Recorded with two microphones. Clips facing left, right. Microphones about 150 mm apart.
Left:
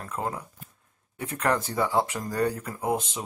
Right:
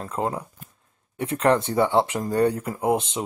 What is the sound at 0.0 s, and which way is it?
Speech, 25° right (ahead or behind).